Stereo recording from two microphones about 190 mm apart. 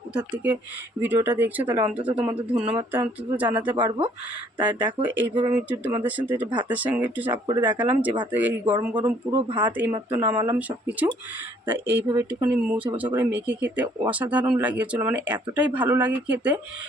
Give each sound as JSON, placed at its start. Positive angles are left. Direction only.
{"t": 1.0, "sound": "speech", "side_deg": -10}
{"t": 4.5, "sound": "speech", "side_deg": -25}
{"t": 4.9, "sound": "speech", "side_deg": -10}
{"t": 7.4, "sound": "speech", "side_deg": -25}
{"t": 7.8, "sound": "speech", "side_deg": -10}
{"t": 9.3, "sound": "speech", "side_deg": -25}
{"t": 9.7, "sound": "speech", "side_deg": -10}